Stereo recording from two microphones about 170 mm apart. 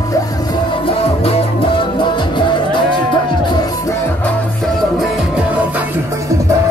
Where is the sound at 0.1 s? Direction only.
25° left (ahead or behind).